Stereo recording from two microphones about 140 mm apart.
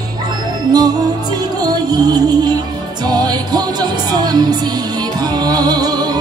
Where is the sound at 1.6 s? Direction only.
30° right (ahead or behind).